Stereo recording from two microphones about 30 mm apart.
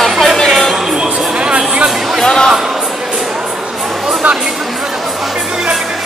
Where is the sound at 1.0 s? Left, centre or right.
Right.